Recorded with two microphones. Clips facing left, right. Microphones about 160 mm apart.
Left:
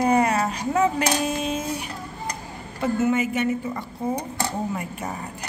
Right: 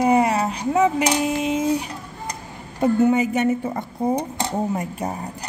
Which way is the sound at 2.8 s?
35° right (ahead or behind).